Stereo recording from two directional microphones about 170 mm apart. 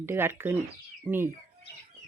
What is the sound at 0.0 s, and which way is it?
Speech, 15° right (ahead or behind).